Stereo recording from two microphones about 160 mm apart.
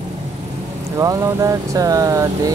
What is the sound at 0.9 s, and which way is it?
Speech, 20° right (ahead or behind).